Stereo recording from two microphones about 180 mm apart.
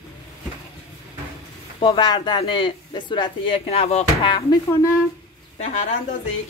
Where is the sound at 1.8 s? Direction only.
25° left (ahead or behind).